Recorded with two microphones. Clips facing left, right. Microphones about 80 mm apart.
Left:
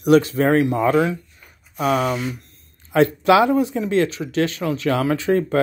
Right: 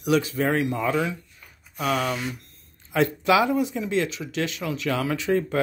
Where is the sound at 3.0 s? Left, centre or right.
Left.